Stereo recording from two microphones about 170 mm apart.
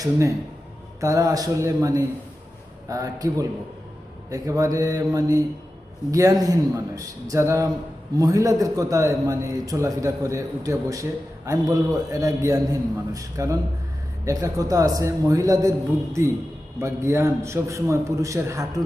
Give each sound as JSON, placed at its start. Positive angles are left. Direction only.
{"t": 0.0, "sound": "a man's voice", "side_deg": -20}
{"t": 16.8, "sound": "a man's voice", "side_deg": -15}